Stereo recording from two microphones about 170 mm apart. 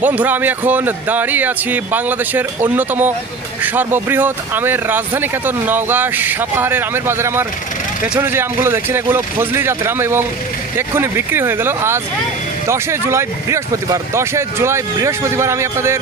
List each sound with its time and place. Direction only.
0.0 s speech: 10° right (ahead or behind)